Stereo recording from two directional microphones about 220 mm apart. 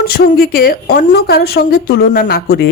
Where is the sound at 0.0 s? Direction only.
45° left (ahead or behind).